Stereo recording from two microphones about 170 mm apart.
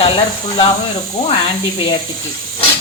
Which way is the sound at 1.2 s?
35° left (ahead or behind).